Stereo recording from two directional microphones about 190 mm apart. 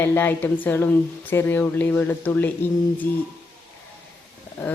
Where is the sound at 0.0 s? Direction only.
10° left (ahead or behind).